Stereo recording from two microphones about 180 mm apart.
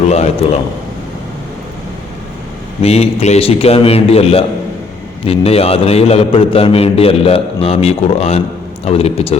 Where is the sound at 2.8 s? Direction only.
35° left (ahead or behind).